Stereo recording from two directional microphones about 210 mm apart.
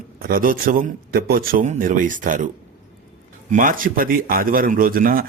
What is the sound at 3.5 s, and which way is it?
A man's voice, 40° right (ahead or behind).